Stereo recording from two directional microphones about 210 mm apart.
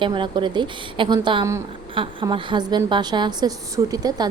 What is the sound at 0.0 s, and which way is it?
A woman's voice, 25° right (ahead or behind).